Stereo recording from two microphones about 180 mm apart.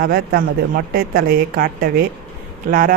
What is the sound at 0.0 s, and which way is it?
A woman's voice, 55° right (ahead or behind).